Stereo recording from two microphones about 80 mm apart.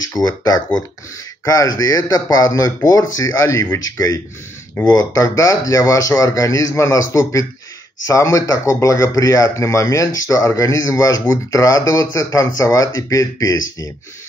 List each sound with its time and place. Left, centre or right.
1.4 s a man's voice: left